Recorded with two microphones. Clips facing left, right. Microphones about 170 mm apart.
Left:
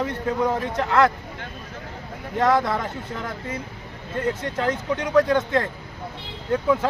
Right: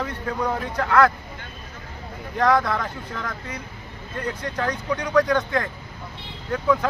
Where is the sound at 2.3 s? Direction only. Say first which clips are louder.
Even; 25° left (ahead or behind).